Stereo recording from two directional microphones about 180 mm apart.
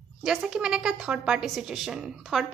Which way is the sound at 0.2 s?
5° right (ahead or behind).